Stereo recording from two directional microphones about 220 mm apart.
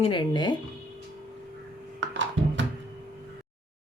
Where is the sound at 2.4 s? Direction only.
55° right (ahead or behind).